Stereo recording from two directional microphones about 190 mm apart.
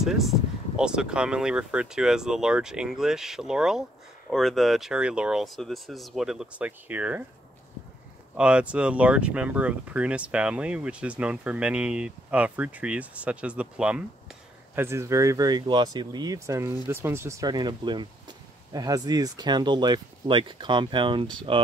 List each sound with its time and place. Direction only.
0.0 s speech: centre (ahead or behind)
8.4 s speech: 5° right (ahead or behind); by 21.5 s 25° right (ahead or behind)